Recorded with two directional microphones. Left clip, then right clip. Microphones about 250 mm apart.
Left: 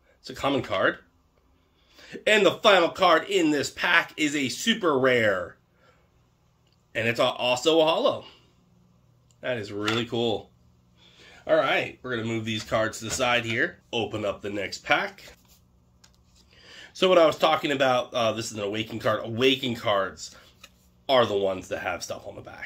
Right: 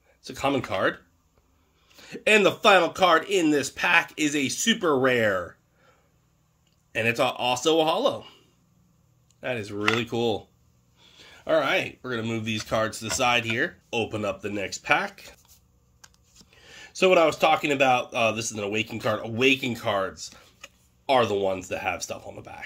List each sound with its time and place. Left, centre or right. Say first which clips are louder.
0.2 s speech: right 1 dB; right
2.0 s speech: right 1 dB; right
6.9 s speech: even; right
9.4 s speech: even; right
11.4 s speech: even; right
16.4 s a sound: even; right
17.6 s speech: right 2 dB; right